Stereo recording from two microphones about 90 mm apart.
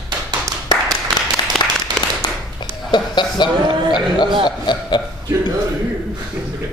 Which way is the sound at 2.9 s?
55° left (ahead or behind).